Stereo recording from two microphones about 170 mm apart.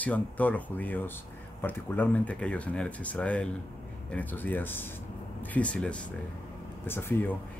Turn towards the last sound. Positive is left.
turn(degrees=10)  # may be behind; listen again after turning